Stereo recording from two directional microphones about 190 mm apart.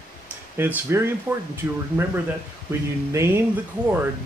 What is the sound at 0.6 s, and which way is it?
Speech, 10° right (ahead or behind).